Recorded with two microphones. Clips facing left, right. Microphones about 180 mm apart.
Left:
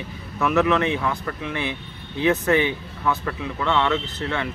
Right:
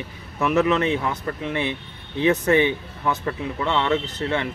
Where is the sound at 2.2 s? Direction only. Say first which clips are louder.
Right 1 dB; 20° right (ahead or behind).